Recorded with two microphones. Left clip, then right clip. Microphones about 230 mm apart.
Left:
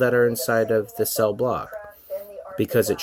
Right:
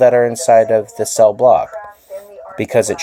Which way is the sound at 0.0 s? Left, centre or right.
Right.